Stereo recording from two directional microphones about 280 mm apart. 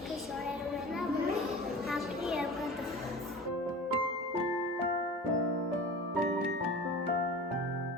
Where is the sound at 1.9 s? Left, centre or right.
Centre.